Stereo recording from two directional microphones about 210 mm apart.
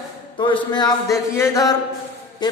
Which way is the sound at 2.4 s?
20° left (ahead or behind).